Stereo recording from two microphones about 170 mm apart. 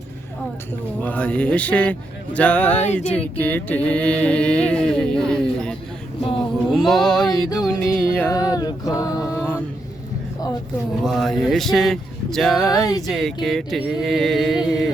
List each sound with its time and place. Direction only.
1.0 s music: 10° left (ahead or behind)
6.7 s speech: centre (ahead or behind)
8.1 s music: 10° left (ahead or behind)
8.4 s a sound: 20° left (ahead or behind)
11.0 s speech: centre (ahead or behind)